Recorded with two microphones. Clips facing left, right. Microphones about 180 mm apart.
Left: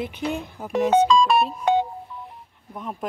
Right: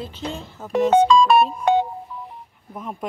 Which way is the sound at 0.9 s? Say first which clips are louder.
Right 3 dB; 60° right (ahead or behind).